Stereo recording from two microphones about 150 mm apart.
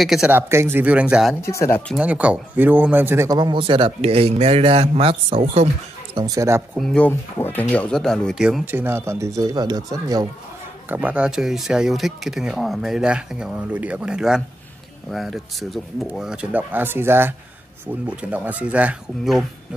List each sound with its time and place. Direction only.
0.0 s speech: centre (ahead or behind)
0.3 s speech: 15° right (ahead or behind)
1.4 s speech: 20° left (ahead or behind)
2.0 s speech: 10° right (ahead or behind)
3.3 s speech: 30° right (ahead or behind)
6.1 s speech: 25° right (ahead or behind)
6.8 s speech: 5° left (ahead or behind)
7.1 s speech: 15° left (ahead or behind)
8.5 s speech: 10° right (ahead or behind)
10.9 s speech: 10° right (ahead or behind)